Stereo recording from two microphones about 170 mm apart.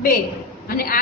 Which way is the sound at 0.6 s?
60° left (ahead or behind).